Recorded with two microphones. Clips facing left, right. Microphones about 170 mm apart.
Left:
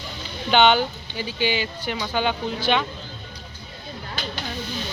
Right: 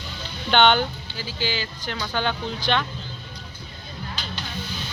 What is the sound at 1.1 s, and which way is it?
Speech, 20° left (ahead or behind).